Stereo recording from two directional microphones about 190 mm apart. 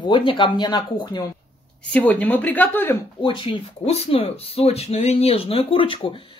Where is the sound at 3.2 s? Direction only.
25° left (ahead or behind).